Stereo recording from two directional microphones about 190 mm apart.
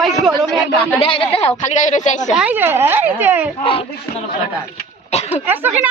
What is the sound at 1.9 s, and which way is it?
Speech, 40° left (ahead or behind).